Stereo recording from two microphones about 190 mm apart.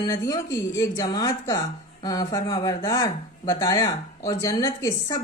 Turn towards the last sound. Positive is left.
turn(degrees=15)  # may be behind; listen again after turning